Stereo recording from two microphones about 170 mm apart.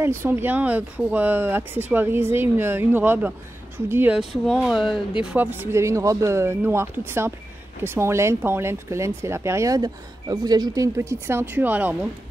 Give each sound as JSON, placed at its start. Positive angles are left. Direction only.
{"t": 0.0, "sound": "speech", "side_deg": -15}